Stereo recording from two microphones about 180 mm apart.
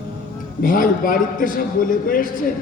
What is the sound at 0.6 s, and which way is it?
A man's voice, 50° left (ahead or behind).